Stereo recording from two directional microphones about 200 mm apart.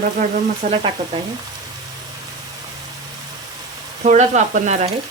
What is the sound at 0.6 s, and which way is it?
Speech, 45° right (ahead or behind).